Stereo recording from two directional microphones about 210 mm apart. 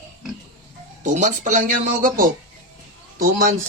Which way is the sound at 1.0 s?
35° right (ahead or behind).